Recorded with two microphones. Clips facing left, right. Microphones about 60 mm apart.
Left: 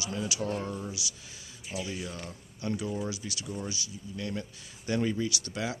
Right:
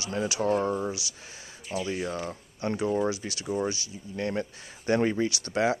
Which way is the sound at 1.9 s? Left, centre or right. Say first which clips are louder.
Right 7 dB; right.